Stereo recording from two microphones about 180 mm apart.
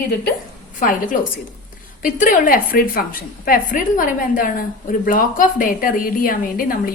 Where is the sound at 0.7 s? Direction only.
45° left (ahead or behind).